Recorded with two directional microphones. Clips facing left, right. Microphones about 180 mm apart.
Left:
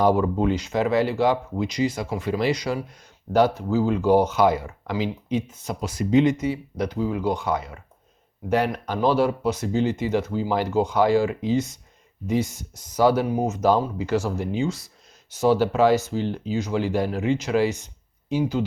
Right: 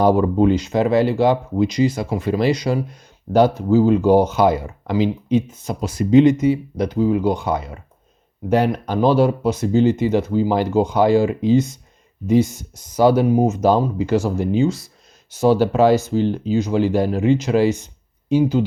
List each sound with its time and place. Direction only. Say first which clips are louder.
0.0 s speech: right 5 dB; 30° right (ahead or behind)